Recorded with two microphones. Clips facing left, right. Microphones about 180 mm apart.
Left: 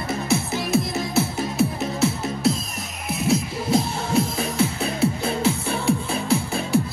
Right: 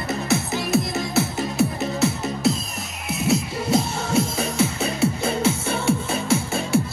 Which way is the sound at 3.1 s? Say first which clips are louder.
Even; 70° right (ahead or behind).